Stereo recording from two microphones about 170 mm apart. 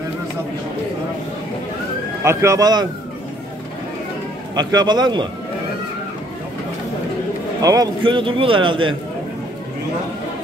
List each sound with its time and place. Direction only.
2.2 s a man's voice: 15° right (ahead or behind)
4.6 s a man's voice: 25° right (ahead or behind)
7.6 s a man's voice: 20° right (ahead or behind)